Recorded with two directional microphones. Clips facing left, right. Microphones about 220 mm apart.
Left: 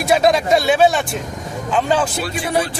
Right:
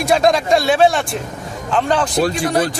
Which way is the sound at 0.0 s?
5° left (ahead or behind).